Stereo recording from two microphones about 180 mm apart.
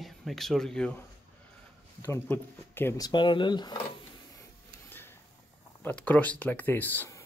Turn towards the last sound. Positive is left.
turn(degrees=10)  # may be behind; listen again after turning